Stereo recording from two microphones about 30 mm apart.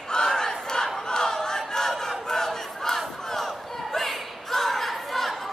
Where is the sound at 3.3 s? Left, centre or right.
Centre.